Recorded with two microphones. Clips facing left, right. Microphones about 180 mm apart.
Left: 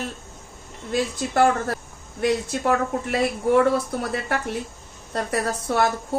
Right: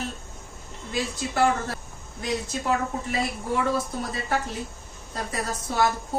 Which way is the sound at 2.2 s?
65° left (ahead or behind).